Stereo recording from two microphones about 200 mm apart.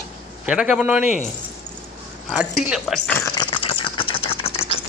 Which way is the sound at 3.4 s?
25° left (ahead or behind).